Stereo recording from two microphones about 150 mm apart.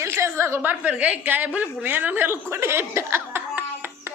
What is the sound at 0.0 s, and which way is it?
A woman's voice, 20° right (ahead or behind).